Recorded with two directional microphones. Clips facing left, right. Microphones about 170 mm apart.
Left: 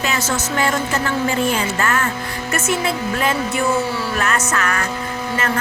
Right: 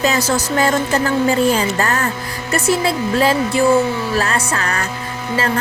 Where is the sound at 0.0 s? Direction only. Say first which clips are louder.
Right 5 dB; 35° right (ahead or behind).